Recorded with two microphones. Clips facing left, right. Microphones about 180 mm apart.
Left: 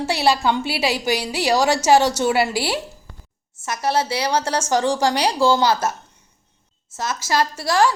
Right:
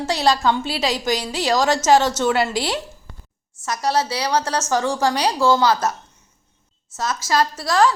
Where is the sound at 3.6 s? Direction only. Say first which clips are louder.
Even; 25° left (ahead or behind).